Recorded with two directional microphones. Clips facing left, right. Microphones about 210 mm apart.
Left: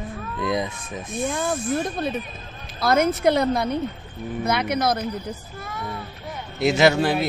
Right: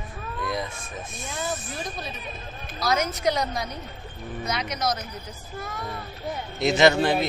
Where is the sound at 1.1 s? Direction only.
55° left (ahead or behind).